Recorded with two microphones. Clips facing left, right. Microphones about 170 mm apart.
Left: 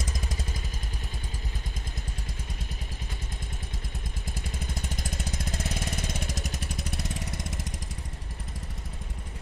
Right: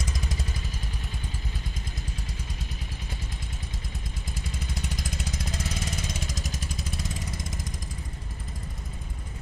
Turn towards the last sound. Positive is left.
turn(degrees=70)  # may be behind; listen again after turning